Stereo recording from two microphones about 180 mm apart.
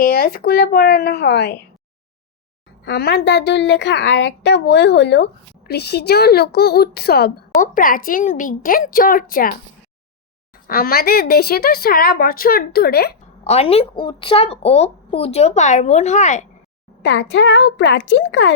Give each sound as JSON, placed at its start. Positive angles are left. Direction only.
{"t": 0.0, "sound": "a woman's voice", "side_deg": 55}
{"t": 2.8, "sound": "a woman's voice", "side_deg": 70}
{"t": 10.7, "sound": "a woman's voice", "side_deg": 55}
{"t": 13.4, "sound": "a child's voice", "side_deg": 35}
{"t": 17.0, "sound": "a child's voice", "side_deg": 85}